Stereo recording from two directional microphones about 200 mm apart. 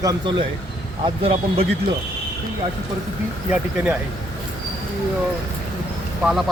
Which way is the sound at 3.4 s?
5° right (ahead or behind).